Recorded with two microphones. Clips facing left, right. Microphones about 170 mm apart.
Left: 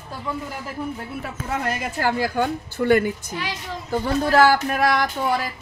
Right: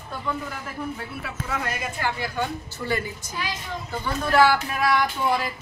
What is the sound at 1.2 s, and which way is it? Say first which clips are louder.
A woman's voice: left 4 dB; 45° left (ahead or behind).